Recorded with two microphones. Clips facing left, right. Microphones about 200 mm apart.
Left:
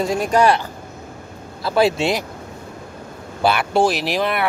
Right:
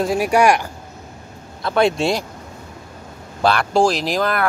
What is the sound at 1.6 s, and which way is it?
Speech, 5° left (ahead or behind).